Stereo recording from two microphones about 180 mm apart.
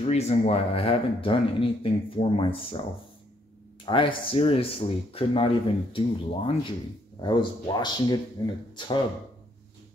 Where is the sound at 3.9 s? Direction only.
30° left (ahead or behind).